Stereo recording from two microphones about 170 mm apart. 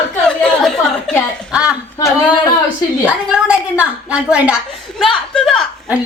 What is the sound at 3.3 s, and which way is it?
A woman's voice, 5° right (ahead or behind).